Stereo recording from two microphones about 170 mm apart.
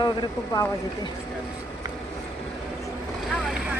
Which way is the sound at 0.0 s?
25° left (ahead or behind).